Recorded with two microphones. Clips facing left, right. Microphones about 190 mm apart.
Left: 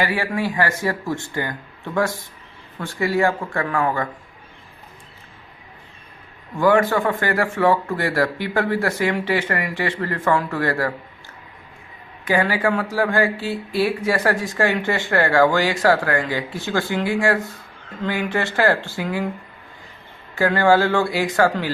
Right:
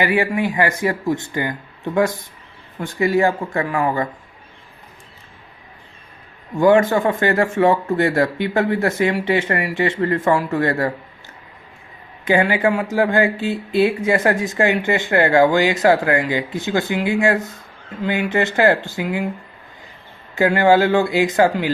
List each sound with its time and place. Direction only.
0.0 s speech: 15° right (ahead or behind)
6.6 s speech: 20° right (ahead or behind)
12.2 s speech: 25° right (ahead or behind)
20.3 s speech: 20° right (ahead or behind)